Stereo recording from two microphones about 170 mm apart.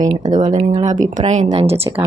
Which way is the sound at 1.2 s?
40° right (ahead or behind).